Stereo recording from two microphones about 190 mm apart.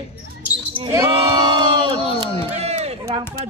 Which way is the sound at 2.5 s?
35° right (ahead or behind).